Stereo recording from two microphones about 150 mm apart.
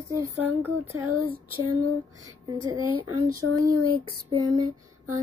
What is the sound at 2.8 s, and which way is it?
Speech, 35° left (ahead or behind).